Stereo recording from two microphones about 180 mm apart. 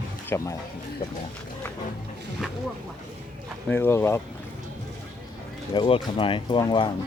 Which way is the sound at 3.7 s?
15° left (ahead or behind).